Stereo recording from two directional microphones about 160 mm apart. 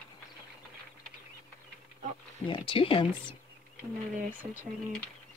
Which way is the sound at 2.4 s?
30° left (ahead or behind).